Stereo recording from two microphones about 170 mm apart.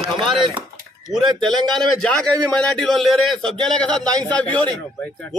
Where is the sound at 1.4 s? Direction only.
Centre (ahead or behind).